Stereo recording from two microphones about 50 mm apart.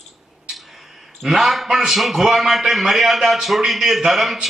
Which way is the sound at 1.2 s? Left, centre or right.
Centre.